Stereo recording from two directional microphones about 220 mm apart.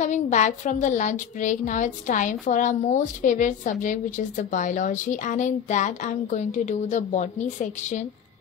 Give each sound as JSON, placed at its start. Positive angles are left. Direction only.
{"t": 0.0, "sound": "speech", "side_deg": 35}